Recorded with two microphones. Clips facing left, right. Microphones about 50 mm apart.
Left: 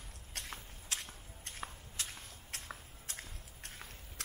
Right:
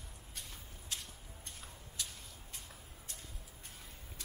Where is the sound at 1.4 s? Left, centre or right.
Left.